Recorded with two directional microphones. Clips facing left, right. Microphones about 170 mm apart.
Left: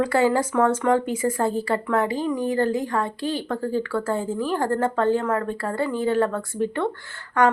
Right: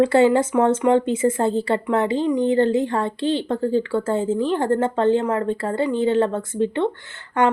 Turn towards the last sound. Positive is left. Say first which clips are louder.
# right 1 dB
turn(degrees=-25)  # may be behind; listen again after turning